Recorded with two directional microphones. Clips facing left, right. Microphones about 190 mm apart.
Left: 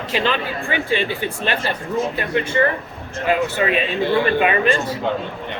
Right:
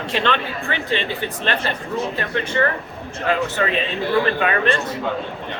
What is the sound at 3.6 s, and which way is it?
Speech, 15° left (ahead or behind).